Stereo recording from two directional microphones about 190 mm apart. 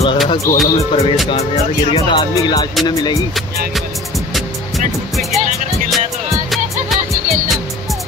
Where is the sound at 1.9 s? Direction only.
25° left (ahead or behind).